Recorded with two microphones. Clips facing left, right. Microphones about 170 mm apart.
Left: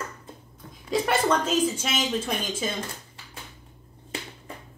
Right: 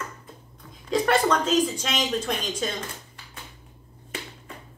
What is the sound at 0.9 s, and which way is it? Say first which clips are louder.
Speech: right 2 dB; 5° left (ahead or behind).